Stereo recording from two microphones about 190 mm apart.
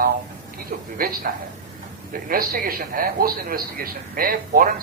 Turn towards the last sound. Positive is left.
turn(degrees=-50)  # may be behind; listen again after turning